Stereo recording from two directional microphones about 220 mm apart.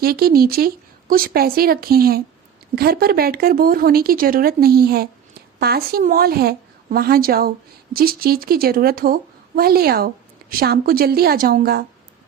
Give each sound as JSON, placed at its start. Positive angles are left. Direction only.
{"t": 0.0, "sound": "speech", "side_deg": -45}